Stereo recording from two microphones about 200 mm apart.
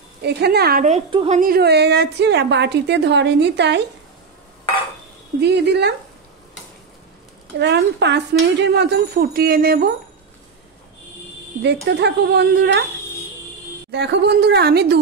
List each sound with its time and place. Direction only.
0.2 s a woman's voice: 55° right (ahead or behind)
0.8 s a woman's voice: 30° right (ahead or behind)
1.4 s a woman's voice: 50° right (ahead or behind)
5.4 s a woman's voice: 55° right (ahead or behind)
7.5 s a woman's voice: 60° right (ahead or behind)
11.6 s a woman's voice: 55° right (ahead or behind)
13.9 s a woman's voice: 55° right (ahead or behind)